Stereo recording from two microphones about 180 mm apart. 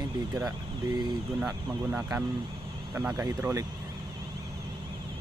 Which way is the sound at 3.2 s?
15° right (ahead or behind).